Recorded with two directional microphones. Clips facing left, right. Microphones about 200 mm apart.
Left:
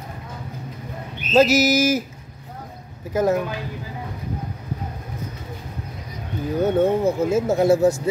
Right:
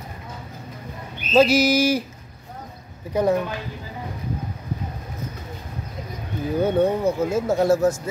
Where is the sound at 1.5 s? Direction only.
45° left (ahead or behind).